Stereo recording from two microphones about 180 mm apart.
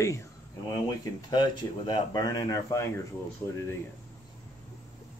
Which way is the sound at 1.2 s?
25° left (ahead or behind).